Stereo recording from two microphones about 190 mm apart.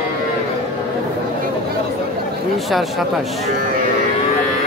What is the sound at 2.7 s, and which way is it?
Speech, centre (ahead or behind).